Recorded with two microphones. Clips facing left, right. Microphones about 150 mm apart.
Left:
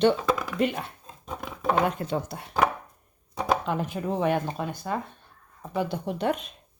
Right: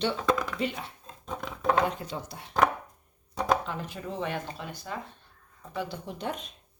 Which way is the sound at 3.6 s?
55° left (ahead or behind).